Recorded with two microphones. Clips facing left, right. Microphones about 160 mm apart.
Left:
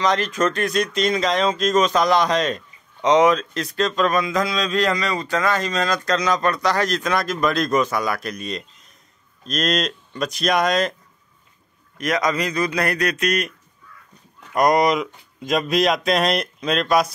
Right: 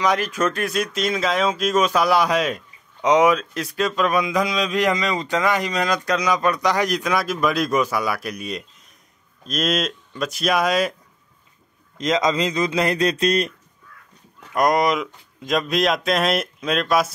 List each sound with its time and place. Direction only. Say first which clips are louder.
0.0 s speech: left 1 dB; 10° right (ahead or behind)
12.0 s a man's voice: right 2 dB; 20° right (ahead or behind)
14.5 s speech: left 2 dB; centre (ahead or behind)